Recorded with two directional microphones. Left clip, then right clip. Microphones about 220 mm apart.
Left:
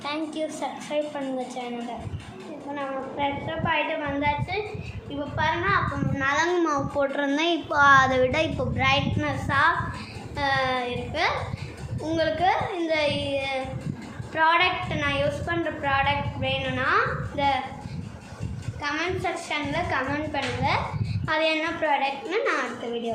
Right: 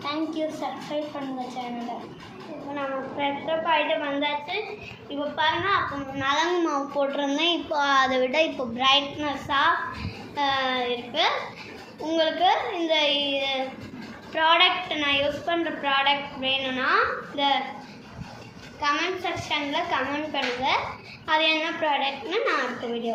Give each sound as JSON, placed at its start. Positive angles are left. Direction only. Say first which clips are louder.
{"t": 0.0, "sound": "a sound", "louder": "right 1 dB", "side_deg": 20}
{"t": 2.7, "sound": "a woman's voice", "louder": "right 1 dB", "side_deg": 5}
{"t": 18.8, "sound": "a woman's voice", "louder": "right 2 dB", "side_deg": 15}